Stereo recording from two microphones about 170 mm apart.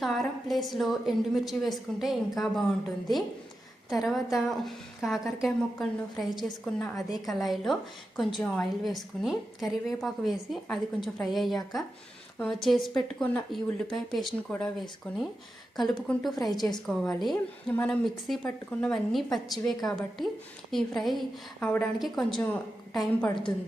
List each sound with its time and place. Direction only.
0.0 s a woman's voice: centre (ahead or behind)
3.8 s a woman's voice: centre (ahead or behind)